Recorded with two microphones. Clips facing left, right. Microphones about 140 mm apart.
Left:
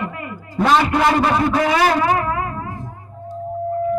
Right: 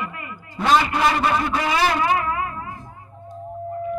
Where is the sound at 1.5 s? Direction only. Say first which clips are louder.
Left 5 dB; 50° left (ahead or behind).